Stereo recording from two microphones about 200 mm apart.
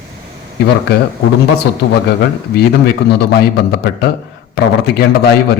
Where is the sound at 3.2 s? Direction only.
55° left (ahead or behind).